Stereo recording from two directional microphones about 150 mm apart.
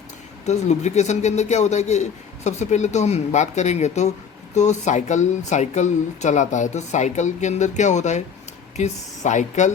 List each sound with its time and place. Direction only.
0.4 s speech: 50° left (ahead or behind)